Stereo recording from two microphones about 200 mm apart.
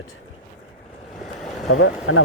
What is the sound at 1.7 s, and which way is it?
Speech, 90° left.